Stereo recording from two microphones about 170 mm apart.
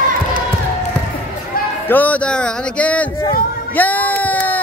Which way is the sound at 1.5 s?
60° left (ahead or behind).